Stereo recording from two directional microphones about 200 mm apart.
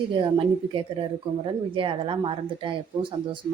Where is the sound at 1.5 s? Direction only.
25° right (ahead or behind).